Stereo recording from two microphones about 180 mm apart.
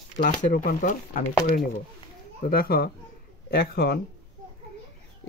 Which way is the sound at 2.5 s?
55° left (ahead or behind).